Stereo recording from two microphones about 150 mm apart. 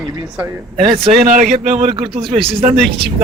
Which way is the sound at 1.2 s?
65° right (ahead or behind).